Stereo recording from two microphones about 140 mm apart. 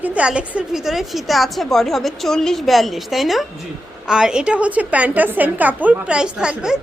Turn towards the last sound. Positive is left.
turn(degrees=-5)  # may be behind; listen again after turning